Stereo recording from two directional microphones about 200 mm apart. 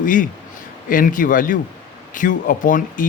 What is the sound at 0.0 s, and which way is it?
A man's voice, 40° left (ahead or behind).